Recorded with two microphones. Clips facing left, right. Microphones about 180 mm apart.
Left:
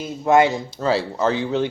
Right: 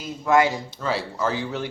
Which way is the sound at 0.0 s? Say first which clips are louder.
Left 3 dB; 25° left (ahead or behind).